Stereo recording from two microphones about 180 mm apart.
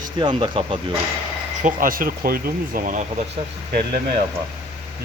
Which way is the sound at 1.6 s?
50° right (ahead or behind).